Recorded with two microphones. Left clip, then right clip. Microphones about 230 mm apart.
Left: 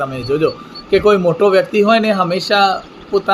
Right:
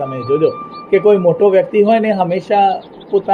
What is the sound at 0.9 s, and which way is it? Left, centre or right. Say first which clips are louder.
A man's voice: right 1 dB; left.